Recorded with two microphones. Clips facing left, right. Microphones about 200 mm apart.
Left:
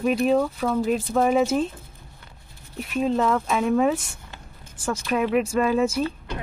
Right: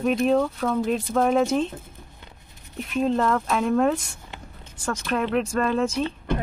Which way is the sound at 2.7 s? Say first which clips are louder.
Even; centre (ahead or behind).